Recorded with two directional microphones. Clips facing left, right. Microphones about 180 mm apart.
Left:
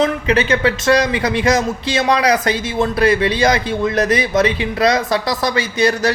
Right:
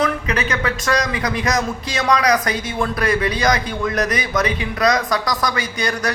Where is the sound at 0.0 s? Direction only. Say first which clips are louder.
Left 5 dB; 30° left (ahead or behind).